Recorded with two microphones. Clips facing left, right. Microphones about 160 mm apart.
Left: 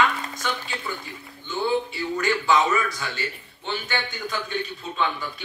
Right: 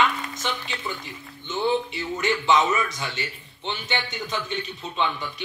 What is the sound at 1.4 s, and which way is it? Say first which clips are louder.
A man's voice: even; 20° right (ahead or behind).